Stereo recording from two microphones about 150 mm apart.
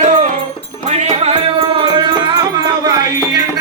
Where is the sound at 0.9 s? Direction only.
45° right (ahead or behind).